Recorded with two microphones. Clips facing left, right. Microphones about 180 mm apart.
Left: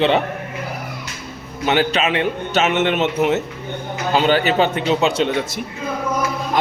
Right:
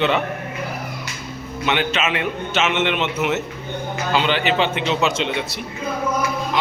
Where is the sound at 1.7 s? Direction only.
35° left (ahead or behind).